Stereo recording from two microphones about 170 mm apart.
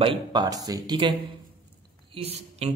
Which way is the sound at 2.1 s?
40° right (ahead or behind).